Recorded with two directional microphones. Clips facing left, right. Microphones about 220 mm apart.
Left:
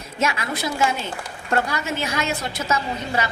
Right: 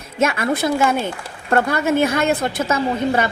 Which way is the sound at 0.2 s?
55° right (ahead or behind).